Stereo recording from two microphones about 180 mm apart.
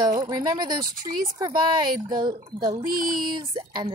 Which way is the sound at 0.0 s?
20° right (ahead or behind).